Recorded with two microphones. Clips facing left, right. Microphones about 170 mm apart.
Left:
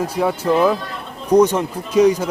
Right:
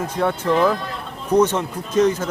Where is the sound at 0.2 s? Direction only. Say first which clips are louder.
Left 2 dB; 5° left (ahead or behind).